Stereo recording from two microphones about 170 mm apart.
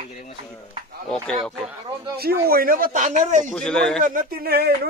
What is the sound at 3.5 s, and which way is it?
Speech, 5° left (ahead or behind).